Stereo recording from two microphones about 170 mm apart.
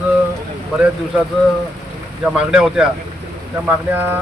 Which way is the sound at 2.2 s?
5° right (ahead or behind).